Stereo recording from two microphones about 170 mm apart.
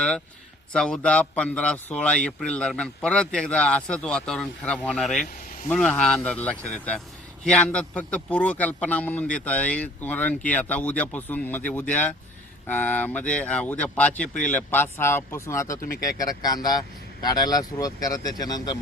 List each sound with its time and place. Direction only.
0.7 s a man's voice: 5° left (ahead or behind); by 18.8 s 20° left (ahead or behind)